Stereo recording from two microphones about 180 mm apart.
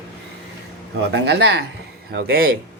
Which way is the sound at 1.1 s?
70° right (ahead or behind).